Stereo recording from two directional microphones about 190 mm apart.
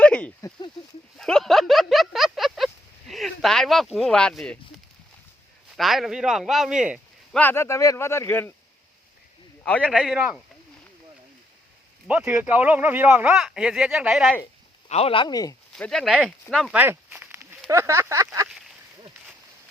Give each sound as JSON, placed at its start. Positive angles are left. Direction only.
{"t": 0.0, "sound": "a sound", "side_deg": 5}
{"t": 5.7, "sound": "speech", "side_deg": 0}
{"t": 7.3, "sound": "speech", "side_deg": 10}
{"t": 10.0, "sound": "speech", "side_deg": -5}
{"t": 12.0, "sound": "speech", "side_deg": -5}
{"t": 14.8, "sound": "speech", "side_deg": 30}
{"t": 15.7, "sound": "speech", "side_deg": 5}